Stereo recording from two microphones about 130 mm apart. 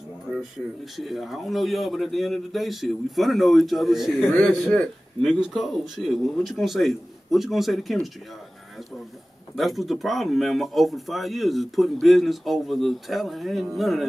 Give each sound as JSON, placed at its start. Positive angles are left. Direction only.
{"t": 0.9, "sound": "speech", "side_deg": 0}
{"t": 9.6, "sound": "speech", "side_deg": 0}